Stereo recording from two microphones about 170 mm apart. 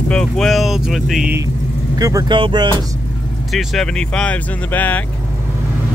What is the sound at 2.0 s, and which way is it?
Speech, 25° right (ahead or behind).